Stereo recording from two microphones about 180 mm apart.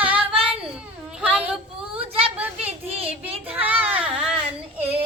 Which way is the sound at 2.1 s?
30° right (ahead or behind).